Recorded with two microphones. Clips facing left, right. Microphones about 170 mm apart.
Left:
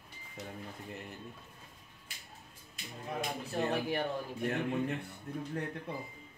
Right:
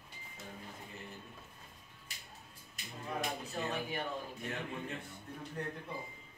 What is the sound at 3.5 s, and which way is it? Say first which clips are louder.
Speech: left 10 dB; 65° left (ahead or behind).